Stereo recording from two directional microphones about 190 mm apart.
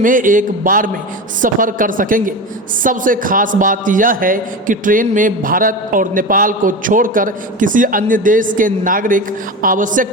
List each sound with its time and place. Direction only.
0.0 s a man's voice: 45° right (ahead or behind)